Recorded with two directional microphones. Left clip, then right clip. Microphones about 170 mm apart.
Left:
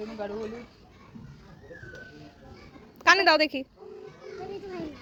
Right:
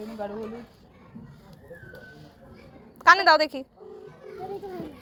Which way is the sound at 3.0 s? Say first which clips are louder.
Right 3 dB; 20° left (ahead or behind).